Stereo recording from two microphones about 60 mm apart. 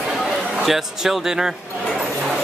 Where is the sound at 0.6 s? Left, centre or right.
Centre.